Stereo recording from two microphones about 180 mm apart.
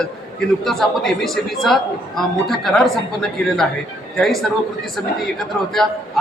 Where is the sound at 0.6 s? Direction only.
Centre (ahead or behind).